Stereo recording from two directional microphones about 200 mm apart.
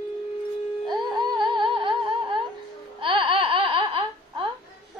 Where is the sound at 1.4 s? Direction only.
25° right (ahead or behind).